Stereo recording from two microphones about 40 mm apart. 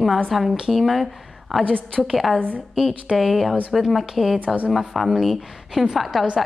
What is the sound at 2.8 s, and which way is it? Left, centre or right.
Speech, centre.